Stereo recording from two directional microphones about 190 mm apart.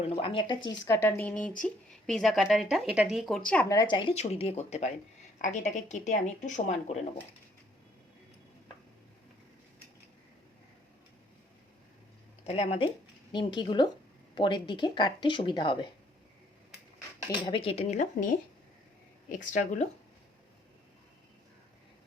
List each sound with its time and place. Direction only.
0.2 s a woman's voice: 25° left (ahead or behind); by 3.7 s 5° left (ahead or behind)
3.7 s speech: 20° left (ahead or behind)
12.5 s speech: 35° left (ahead or behind)
17.2 s speech: 25° left (ahead or behind)
19.3 s speech: 40° left (ahead or behind)